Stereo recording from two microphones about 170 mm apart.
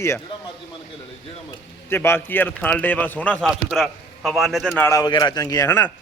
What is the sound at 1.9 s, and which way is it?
Speech, 15° left (ahead or behind).